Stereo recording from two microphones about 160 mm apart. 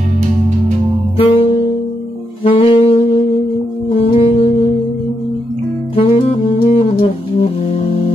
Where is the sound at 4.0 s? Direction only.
40° left (ahead or behind).